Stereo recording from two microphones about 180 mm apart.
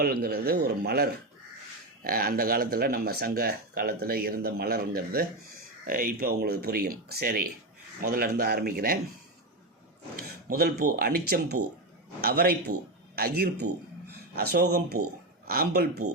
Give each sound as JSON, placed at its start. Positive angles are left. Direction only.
{"t": 0.0, "sound": "speech", "side_deg": -60}
{"t": 10.2, "sound": "speech", "side_deg": -55}